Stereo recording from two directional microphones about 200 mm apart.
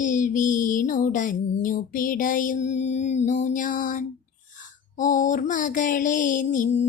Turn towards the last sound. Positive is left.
turn(degrees=35)  # may be behind; listen again after turning